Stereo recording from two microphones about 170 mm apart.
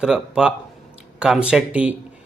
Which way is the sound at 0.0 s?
5° right (ahead or behind).